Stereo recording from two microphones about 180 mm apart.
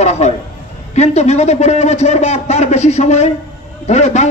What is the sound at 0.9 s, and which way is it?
A man's voice, 40° left (ahead or behind).